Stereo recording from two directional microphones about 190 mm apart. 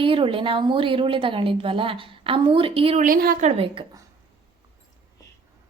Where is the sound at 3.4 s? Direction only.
30° right (ahead or behind).